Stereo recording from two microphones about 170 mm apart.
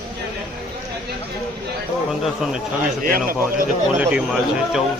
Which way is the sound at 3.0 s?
55° right (ahead or behind).